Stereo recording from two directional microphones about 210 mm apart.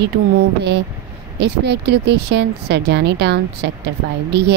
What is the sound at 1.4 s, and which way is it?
Speech, 50° right (ahead or behind).